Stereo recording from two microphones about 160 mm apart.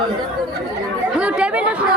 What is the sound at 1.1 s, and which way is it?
Chatter, 5° right (ahead or behind).